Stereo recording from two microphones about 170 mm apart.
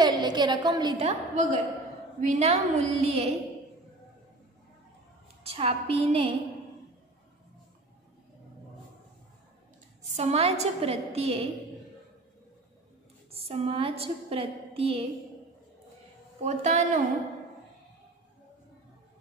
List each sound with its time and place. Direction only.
0.0 s a sound: 25° right (ahead or behind)
1.0 s a woman's voice: 45° right (ahead or behind)
5.4 s a woman's voice: 35° right (ahead or behind)
10.0 s a woman's voice: 40° right (ahead or behind)
13.3 s a woman's voice: 35° right (ahead or behind)
16.4 s a woman's voice: 45° right (ahead or behind)